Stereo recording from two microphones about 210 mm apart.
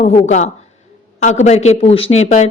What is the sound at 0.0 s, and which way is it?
A woman's voice, 30° left (ahead or behind).